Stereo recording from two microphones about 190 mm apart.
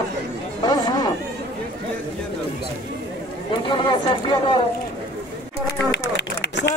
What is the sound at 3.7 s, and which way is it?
Speech, 25° left (ahead or behind).